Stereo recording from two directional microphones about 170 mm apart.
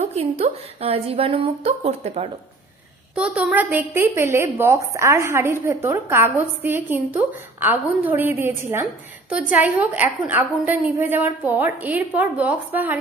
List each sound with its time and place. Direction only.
0.0 s speech: 40° right (ahead or behind)
3.2 s a woman's voice: 5° right (ahead or behind)